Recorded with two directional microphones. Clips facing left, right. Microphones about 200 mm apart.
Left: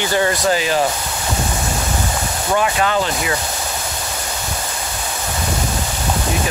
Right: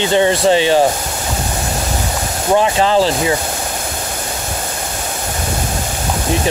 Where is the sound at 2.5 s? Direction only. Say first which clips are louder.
Right 5 dB; 30° right (ahead or behind).